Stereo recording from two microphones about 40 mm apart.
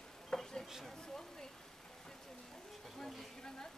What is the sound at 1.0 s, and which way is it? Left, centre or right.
Speech, centre.